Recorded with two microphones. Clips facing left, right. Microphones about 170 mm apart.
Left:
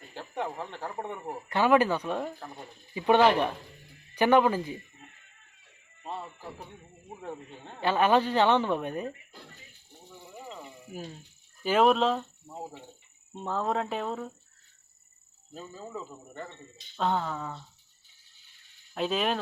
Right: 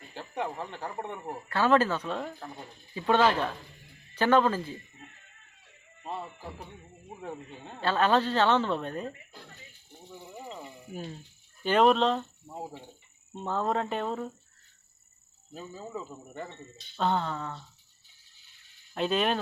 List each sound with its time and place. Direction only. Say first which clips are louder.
0.1 s speech: even; centre (ahead or behind)
1.5 s a woman's voice: left 1 dB; 15° left (ahead or behind)
7.2 s speech: even; 5° right (ahead or behind)
7.8 s a woman's voice: left 1 dB; 15° left (ahead or behind)
10.1 s cricket: right 2 dB; 5° right (ahead or behind)
11.6 s speech: even; 5° left (ahead or behind)
12.5 s cricket: right 1 dB; 10° right (ahead or behind)
13.3 s speech: right 1 dB; centre (ahead or behind)
15.5 s speech: right 1 dB; centre (ahead or behind)
18.9 s speech: right 1 dB; centre (ahead or behind)